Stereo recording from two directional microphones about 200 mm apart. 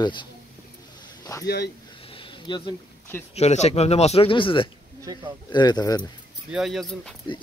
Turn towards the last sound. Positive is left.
turn(degrees=0)  # may be behind; listen again after turning